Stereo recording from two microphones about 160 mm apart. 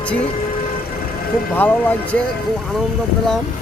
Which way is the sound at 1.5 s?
10° left (ahead or behind).